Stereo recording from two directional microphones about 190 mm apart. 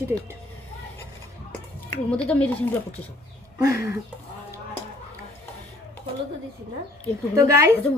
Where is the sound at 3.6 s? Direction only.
15° right (ahead or behind).